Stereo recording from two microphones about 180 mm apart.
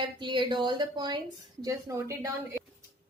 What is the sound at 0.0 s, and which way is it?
A woman's voice, 25° right (ahead or behind).